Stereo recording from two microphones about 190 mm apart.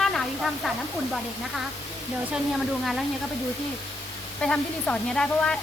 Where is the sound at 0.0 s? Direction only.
Centre (ahead or behind).